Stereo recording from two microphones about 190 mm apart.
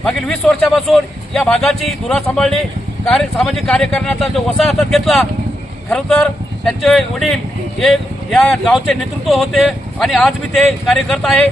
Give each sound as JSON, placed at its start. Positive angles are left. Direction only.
{"t": 0.0, "sound": "speech", "side_deg": 5}